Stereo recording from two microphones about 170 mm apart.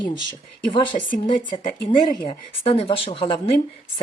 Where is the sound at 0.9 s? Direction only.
50° left (ahead or behind).